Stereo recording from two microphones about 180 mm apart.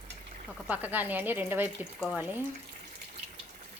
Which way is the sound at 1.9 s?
Centre (ahead or behind).